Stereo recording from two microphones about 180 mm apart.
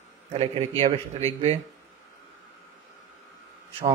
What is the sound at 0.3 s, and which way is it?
A man's voice, 35° right (ahead or behind).